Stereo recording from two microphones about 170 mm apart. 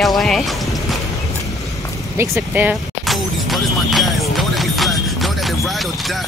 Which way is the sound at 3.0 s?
Centre (ahead or behind).